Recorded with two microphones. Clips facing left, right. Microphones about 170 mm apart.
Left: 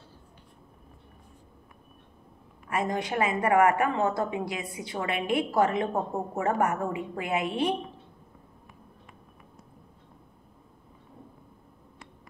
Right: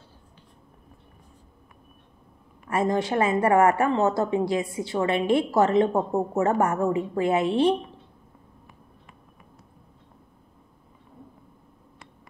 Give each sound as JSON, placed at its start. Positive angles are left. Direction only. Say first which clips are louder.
{"t": 2.7, "sound": "a woman's voice", "louder": "right 5 dB", "side_deg": -30}